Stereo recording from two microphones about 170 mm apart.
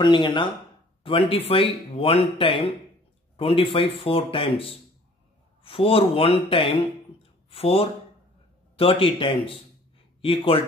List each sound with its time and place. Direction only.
0.0 s speech: 25° left (ahead or behind)